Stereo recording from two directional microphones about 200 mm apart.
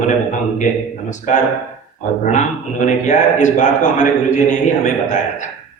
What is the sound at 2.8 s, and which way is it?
A man's voice, 35° left (ahead or behind).